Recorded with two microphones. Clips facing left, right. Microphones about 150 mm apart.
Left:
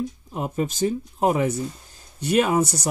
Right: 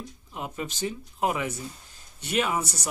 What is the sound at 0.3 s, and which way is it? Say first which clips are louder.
Speech: left 6 dB; 40° left (ahead or behind).